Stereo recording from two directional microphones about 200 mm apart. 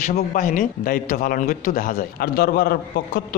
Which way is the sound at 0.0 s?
40° left (ahead or behind).